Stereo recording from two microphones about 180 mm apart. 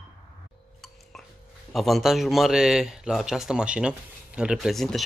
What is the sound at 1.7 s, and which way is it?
A man's voice, centre (ahead or behind).